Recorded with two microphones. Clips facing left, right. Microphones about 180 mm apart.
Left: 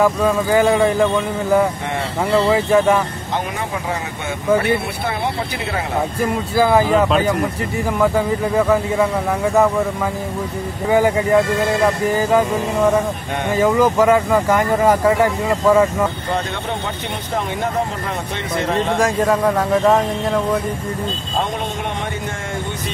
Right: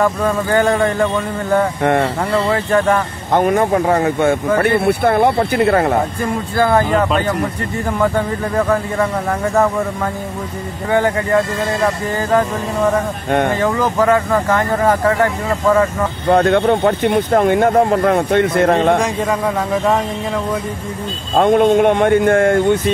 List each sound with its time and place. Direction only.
0.0 s speech: 5° left (ahead or behind)
2.3 s speech: 10° left (ahead or behind)
3.3 s speech: 50° right (ahead or behind)
6.5 s speech: 5° left (ahead or behind)
8.5 s speech: 5° left (ahead or behind)
10.9 s speech: 10° left (ahead or behind)
13.6 s speech: 10° left (ahead or behind)
16.3 s speech: 55° right (ahead or behind)
18.9 s speech: centre (ahead or behind)
21.4 s speech: 55° right (ahead or behind)